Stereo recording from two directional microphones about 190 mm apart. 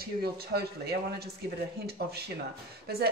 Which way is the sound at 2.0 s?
60° right (ahead or behind).